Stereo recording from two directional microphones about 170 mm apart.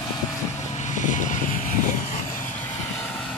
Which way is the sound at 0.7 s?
45° left (ahead or behind).